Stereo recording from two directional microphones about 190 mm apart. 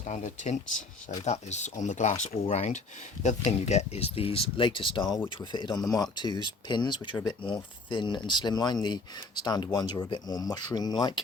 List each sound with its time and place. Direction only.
0.1 s speech: 35° left (ahead or behind); by 11.2 s 20° left (ahead or behind)